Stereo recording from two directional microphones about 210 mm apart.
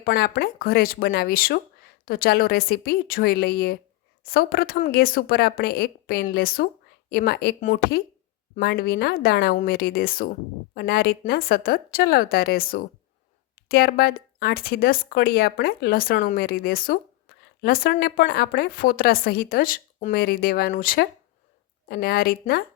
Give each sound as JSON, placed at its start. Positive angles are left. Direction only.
{"t": 0.0, "sound": "speech", "side_deg": 50}